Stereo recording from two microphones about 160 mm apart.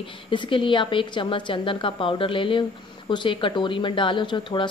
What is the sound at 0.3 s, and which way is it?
Speech, 30° left (ahead or behind).